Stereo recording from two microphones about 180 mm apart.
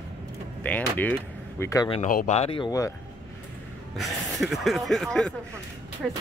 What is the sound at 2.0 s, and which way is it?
Speech, 45° left (ahead or behind).